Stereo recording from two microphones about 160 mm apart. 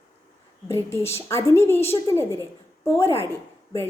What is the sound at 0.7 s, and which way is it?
A woman's voice, 15° left (ahead or behind).